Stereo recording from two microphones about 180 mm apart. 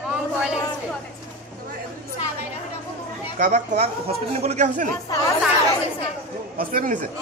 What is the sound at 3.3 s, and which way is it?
A man's voice, 45° right (ahead or behind).